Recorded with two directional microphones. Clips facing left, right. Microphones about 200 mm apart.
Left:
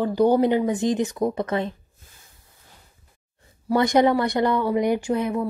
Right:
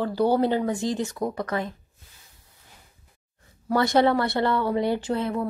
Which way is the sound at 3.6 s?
15° left (ahead or behind).